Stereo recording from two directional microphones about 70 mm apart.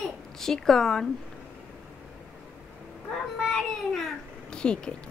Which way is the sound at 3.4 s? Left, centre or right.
Centre.